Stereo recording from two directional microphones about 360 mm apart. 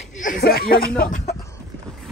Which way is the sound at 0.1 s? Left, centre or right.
Left.